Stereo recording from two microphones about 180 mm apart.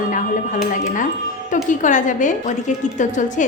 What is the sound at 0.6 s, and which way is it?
A woman's voice, 45° left (ahead or behind).